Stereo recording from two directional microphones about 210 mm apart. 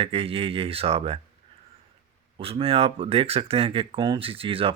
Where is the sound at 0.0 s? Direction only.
25° right (ahead or behind).